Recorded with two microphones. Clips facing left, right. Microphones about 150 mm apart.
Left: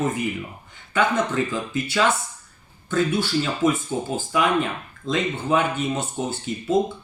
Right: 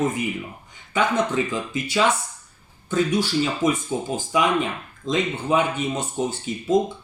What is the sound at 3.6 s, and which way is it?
Speech, 15° right (ahead or behind).